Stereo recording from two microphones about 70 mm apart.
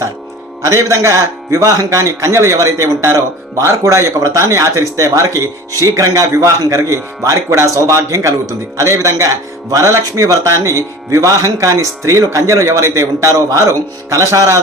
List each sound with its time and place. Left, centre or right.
0.6 s speech: right